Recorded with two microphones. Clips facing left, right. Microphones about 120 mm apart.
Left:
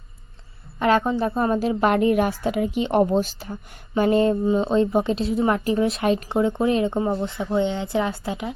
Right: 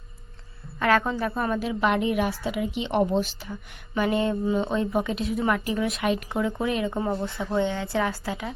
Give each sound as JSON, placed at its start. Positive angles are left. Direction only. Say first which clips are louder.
{"t": 0.8, "sound": "a woman's voice", "louder": "left 3 dB", "side_deg": 20}